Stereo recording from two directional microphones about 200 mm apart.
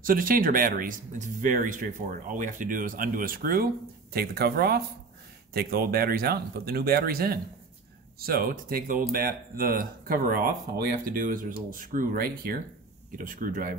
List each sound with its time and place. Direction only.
0.0 s speech: 45° right (ahead or behind)